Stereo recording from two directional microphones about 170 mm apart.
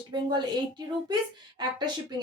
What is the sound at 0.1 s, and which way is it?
Speech, 25° right (ahead or behind).